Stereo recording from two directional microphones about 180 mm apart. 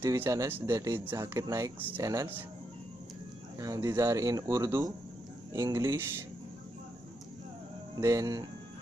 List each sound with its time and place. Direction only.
0.0 s speech: 15° right (ahead or behind)
3.5 s speech: 20° right (ahead or behind)
8.0 s speech: 20° right (ahead or behind)